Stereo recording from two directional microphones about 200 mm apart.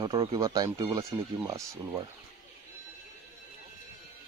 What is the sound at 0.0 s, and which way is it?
Speech, 20° right (ahead or behind).